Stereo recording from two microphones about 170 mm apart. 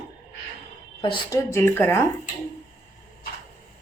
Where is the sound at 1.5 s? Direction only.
15° left (ahead or behind).